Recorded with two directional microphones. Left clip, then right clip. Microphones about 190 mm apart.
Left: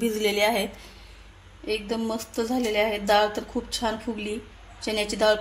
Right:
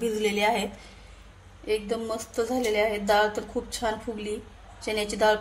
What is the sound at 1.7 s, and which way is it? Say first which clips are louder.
A woman's voice: even; 20° left (ahead or behind).